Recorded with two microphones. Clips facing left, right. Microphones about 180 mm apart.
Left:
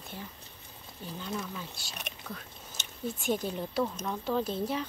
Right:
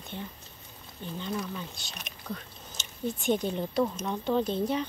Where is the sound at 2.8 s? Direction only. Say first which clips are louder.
Right 1 dB; 60° left (ahead or behind).